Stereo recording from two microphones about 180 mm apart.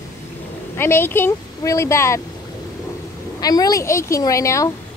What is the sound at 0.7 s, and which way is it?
Speech, 15° left (ahead or behind).